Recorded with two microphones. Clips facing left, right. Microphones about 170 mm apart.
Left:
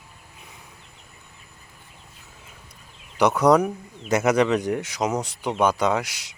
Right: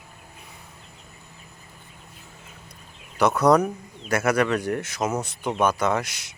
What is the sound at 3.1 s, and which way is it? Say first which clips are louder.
Speech: left 1 dB; 15° left (ahead or behind).